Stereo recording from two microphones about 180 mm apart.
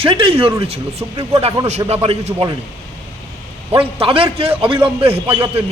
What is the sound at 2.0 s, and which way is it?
Speech, 35° right (ahead or behind).